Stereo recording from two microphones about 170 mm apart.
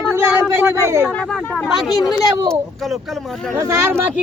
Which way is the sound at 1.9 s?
Centre (ahead or behind).